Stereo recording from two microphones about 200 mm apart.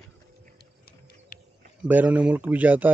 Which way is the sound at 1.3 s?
45° left (ahead or behind).